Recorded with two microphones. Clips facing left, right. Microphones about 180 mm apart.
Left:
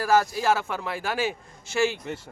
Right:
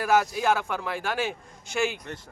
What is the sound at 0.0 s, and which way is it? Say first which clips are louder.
A man's voice: left 1 dB; centre (ahead or behind).